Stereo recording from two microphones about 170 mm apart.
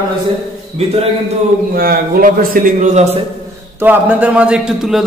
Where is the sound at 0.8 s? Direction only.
40° right (ahead or behind).